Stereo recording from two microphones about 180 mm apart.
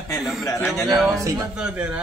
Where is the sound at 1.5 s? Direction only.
5° right (ahead or behind).